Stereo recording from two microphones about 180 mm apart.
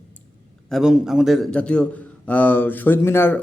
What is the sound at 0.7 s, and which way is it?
A man's voice, centre (ahead or behind).